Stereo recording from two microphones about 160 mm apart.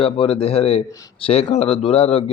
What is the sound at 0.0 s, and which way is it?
A man's voice, 35° left (ahead or behind).